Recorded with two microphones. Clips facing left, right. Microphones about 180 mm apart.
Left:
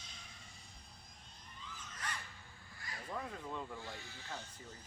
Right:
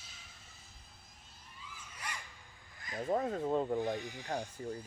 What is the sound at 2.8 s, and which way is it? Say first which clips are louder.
Crow: right 9 dB; 20° right (ahead or behind).